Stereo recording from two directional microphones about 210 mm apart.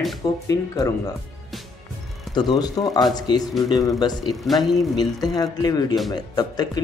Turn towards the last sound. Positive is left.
turn(degrees=20)  # may be behind; listen again after turning